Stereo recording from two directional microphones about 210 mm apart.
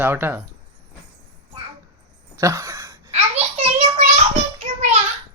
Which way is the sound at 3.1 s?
30° right (ahead or behind).